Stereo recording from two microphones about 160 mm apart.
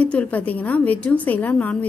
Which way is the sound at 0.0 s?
10° left (ahead or behind).